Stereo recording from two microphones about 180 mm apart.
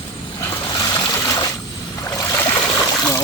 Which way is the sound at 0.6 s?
20° left (ahead or behind).